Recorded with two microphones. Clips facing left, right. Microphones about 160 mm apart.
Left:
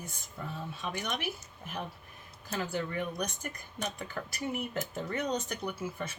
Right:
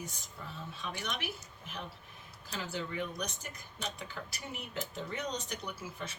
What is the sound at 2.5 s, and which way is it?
Speech, 50° left (ahead or behind).